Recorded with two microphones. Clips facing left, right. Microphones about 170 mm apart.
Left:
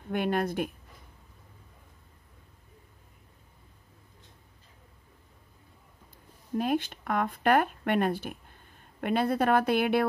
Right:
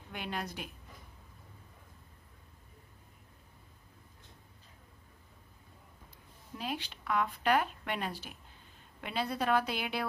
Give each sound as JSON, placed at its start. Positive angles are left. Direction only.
{"t": 0.1, "sound": "speech", "side_deg": 50}
{"t": 6.5, "sound": "speech", "side_deg": 50}